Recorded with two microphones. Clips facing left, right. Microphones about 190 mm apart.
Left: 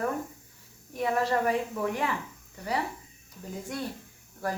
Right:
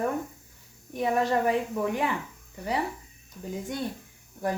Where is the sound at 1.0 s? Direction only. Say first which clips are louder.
Right 2 dB; 20° right (ahead or behind).